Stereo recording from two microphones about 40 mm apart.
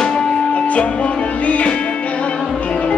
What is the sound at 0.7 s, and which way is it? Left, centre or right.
Music, left.